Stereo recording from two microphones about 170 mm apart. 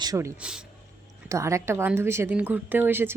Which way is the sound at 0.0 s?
20° right (ahead or behind).